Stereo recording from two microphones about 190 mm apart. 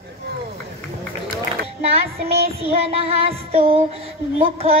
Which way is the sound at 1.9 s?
30° right (ahead or behind).